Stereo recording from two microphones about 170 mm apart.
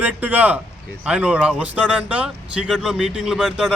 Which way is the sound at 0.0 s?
10° right (ahead or behind).